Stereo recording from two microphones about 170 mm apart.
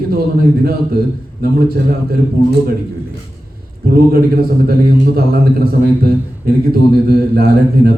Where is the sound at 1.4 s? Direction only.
65° right (ahead or behind).